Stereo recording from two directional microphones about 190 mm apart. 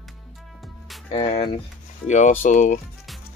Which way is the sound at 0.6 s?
Centre (ahead or behind).